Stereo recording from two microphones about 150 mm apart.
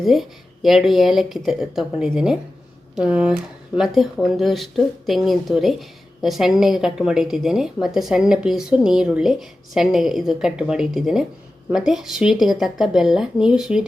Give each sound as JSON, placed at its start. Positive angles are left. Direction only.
{"t": 0.0, "sound": "a woman's voice", "side_deg": 0}